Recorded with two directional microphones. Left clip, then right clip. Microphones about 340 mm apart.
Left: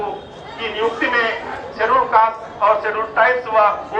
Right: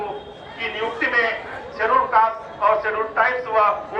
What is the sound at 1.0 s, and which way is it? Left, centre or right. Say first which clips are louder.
A man's voice: right 1 dB; left.